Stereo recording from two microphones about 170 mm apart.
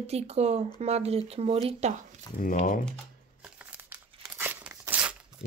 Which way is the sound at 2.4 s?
50° left (ahead or behind).